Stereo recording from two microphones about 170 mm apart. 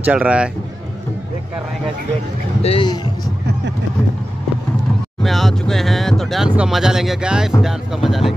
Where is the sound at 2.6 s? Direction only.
35° left (ahead or behind).